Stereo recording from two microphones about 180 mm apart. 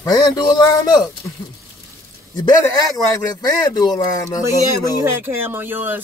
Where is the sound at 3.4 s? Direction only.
20° left (ahead or behind).